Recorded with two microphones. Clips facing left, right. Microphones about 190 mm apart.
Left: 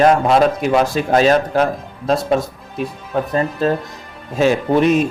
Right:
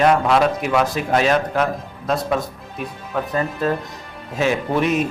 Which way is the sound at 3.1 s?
35° left (ahead or behind).